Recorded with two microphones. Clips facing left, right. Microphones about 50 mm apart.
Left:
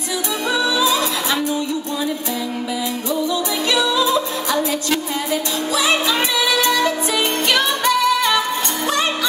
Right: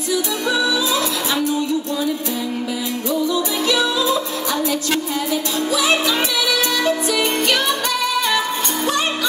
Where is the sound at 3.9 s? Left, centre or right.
Left.